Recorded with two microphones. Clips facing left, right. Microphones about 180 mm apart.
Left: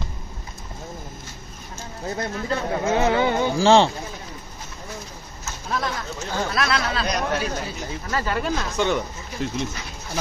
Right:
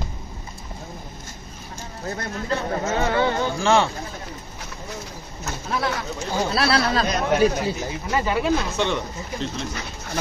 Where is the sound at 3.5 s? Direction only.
30° left (ahead or behind).